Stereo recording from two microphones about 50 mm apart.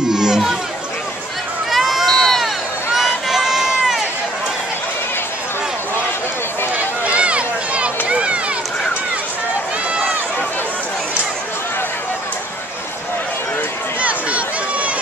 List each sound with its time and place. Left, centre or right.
0.1 s chatter: centre
1.7 s run: centre
6.7 s a sound: right
8.1 s run: right
14.0 s run: right